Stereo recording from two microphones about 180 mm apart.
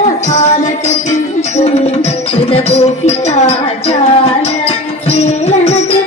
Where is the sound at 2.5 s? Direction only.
35° left (ahead or behind).